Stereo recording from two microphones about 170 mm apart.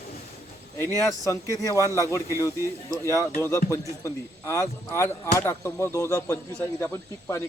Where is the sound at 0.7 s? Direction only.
15° left (ahead or behind).